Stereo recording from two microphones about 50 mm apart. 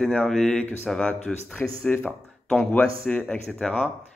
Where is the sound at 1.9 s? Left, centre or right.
Left.